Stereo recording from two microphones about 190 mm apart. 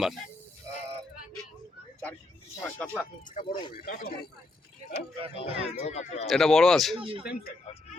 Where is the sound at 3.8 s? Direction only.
50° left (ahead or behind).